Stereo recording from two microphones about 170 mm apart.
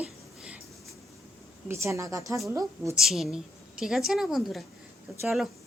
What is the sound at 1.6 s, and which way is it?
A woman's voice, 15° right (ahead or behind).